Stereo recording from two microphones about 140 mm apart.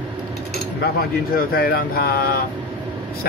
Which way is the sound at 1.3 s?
90° left.